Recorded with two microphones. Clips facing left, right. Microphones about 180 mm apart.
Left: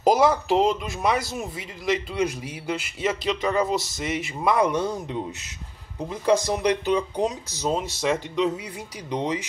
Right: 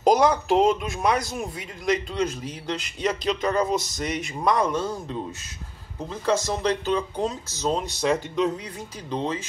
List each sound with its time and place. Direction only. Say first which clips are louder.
0.0 s speech: even; 5° left (ahead or behind)
4.6 s speech: left 2 dB; 15° left (ahead or behind)
9.1 s speech: left 1 dB; 15° left (ahead or behind)